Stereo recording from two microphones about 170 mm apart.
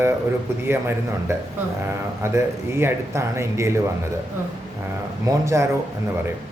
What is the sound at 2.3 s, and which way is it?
Speech, 15° right (ahead or behind).